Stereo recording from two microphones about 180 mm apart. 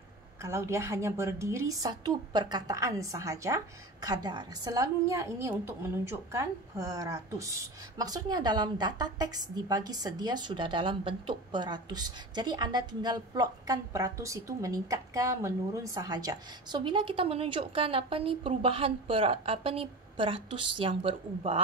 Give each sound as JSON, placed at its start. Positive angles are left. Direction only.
{"t": 0.4, "sound": "a woman's voice", "side_deg": -15}